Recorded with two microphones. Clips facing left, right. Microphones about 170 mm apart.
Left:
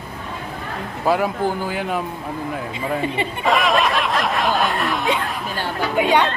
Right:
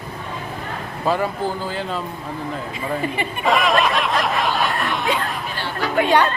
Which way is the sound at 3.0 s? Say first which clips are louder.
Left 1 dB; 25° left (ahead or behind).